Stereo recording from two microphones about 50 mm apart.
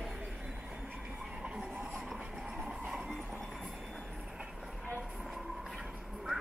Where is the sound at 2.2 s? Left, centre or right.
Centre.